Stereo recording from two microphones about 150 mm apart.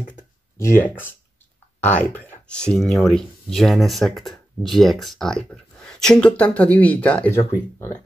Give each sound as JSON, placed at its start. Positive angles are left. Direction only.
{"t": 0.6, "sound": "speech", "side_deg": 15}